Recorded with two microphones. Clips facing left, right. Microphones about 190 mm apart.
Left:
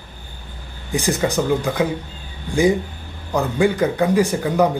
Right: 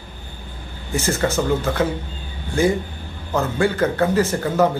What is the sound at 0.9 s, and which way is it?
Speech, 15° left (ahead or behind).